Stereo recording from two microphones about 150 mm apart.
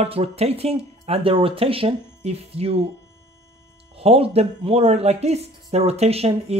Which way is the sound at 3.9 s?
40° right (ahead or behind).